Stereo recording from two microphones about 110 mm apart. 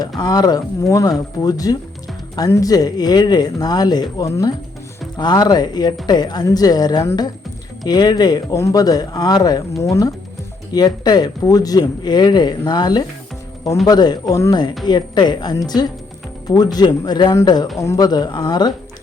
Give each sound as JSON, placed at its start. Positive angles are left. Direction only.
{"t": 0.2, "sound": "speech", "side_deg": 40}
{"t": 10.7, "sound": "speech", "side_deg": 40}